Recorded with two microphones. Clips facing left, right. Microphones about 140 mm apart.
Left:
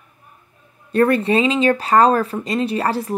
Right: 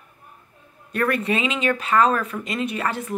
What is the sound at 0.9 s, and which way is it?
Speech, 30° left (ahead or behind).